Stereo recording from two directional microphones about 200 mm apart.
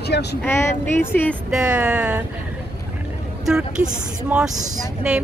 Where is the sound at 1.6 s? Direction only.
5° right (ahead or behind).